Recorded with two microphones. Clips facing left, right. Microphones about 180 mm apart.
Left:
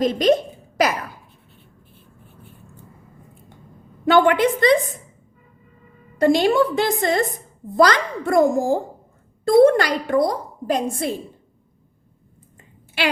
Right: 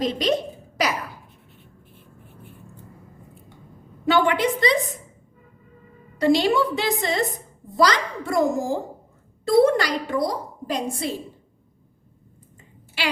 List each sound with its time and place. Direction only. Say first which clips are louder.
0.0 s a woman's voice: left 5 dB; 50° left (ahead or behind)
4.0 s a woman's voice: left 4 dB; 55° left (ahead or behind)
6.1 s a woman's voice: left 3 dB; 50° left (ahead or behind)
12.5 s a sound: left 6 dB; 55° left (ahead or behind)